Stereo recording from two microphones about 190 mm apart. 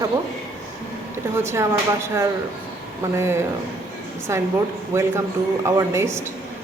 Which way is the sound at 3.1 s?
15° right (ahead or behind).